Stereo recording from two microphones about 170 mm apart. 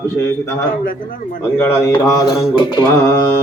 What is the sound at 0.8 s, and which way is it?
Speech, 55° left (ahead or behind).